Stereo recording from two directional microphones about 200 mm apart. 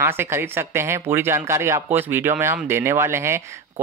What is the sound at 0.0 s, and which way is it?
Speech, 10° right (ahead or behind).